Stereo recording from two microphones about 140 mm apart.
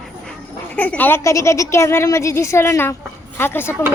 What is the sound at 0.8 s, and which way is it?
A child's voice, 10° left (ahead or behind).